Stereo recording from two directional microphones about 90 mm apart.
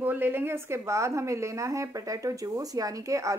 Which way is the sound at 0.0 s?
20° right (ahead or behind).